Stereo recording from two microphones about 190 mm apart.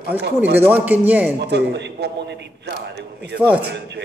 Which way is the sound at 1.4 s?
65° right (ahead or behind).